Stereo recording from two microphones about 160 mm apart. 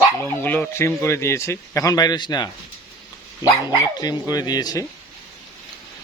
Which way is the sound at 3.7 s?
25° left (ahead or behind).